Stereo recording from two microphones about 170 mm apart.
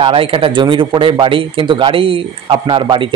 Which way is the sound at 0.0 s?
30° right (ahead or behind).